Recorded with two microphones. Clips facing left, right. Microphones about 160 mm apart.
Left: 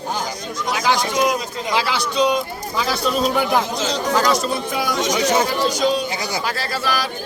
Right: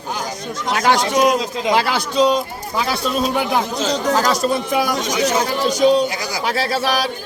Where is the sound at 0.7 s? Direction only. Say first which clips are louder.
Right 3 dB; 65° right (ahead or behind).